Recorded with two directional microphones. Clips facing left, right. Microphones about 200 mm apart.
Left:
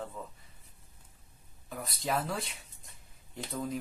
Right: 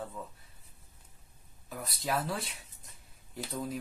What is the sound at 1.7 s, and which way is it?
Speech, centre (ahead or behind).